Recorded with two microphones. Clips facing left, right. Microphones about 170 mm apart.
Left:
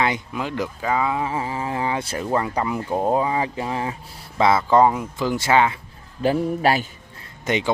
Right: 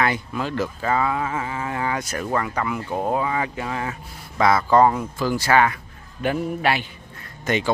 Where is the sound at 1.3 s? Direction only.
30° left (ahead or behind).